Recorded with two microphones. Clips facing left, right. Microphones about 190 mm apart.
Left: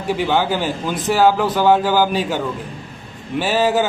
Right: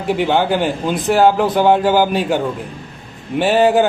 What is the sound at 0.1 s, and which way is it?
Speech, 55° right (ahead or behind).